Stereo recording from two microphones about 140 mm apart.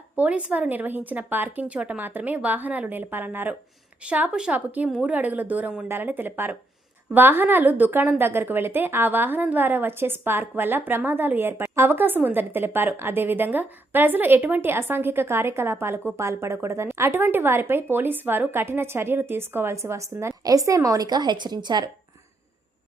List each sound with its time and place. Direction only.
0.2 s a woman's voice: 10° right (ahead or behind); by 21.8 s 30° right (ahead or behind)